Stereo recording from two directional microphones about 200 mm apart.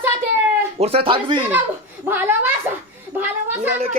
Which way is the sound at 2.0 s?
10° right (ahead or behind).